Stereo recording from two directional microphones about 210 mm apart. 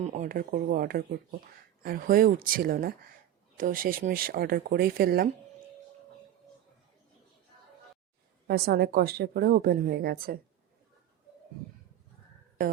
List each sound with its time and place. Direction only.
0.0 s a woman's voice: 35° right (ahead or behind)
8.4 s a woman's voice: 50° right (ahead or behind)